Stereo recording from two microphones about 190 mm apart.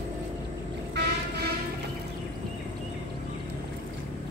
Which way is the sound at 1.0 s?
65° right (ahead or behind).